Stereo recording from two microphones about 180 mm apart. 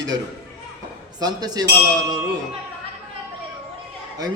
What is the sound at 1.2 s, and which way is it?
Speech, 20° right (ahead or behind).